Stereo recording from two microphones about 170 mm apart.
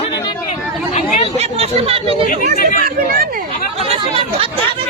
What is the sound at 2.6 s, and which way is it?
Speech, 55° left (ahead or behind).